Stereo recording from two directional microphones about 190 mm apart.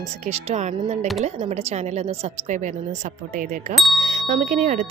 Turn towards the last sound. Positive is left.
turn(degrees=-40)  # may be behind; listen again after turning